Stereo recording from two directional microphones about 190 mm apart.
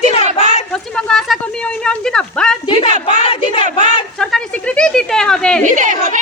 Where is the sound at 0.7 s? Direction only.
5° left (ahead or behind).